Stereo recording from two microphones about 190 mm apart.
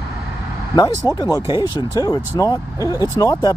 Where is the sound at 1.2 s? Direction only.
20° left (ahead or behind).